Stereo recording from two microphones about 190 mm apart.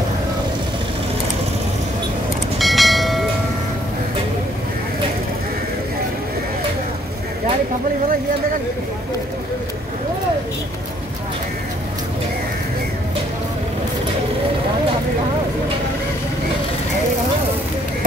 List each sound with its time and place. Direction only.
2.6 s train: centre (ahead or behind)